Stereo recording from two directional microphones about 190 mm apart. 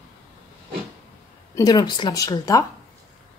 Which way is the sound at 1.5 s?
20° left (ahead or behind).